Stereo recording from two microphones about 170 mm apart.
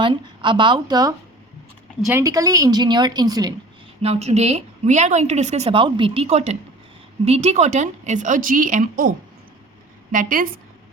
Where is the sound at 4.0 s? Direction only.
40° right (ahead or behind).